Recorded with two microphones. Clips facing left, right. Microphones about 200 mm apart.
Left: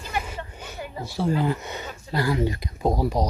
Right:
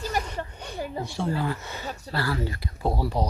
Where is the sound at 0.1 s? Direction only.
40° right (ahead or behind).